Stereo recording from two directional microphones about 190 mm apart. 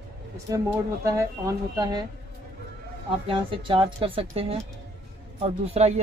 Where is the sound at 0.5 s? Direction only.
15° right (ahead or behind).